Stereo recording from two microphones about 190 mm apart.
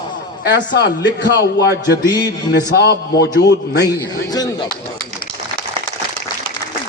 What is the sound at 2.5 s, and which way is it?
A man's voice, 60° left (ahead or behind).